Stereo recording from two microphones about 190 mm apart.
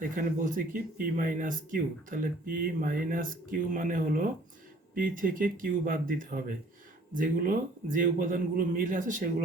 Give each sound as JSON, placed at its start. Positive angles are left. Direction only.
{"t": 0.2, "sound": "speech", "side_deg": -45}